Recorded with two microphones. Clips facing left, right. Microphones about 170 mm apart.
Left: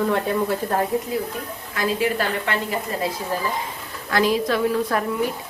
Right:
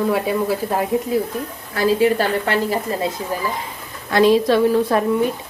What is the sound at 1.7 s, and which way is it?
A woman's voice, 30° right (ahead or behind).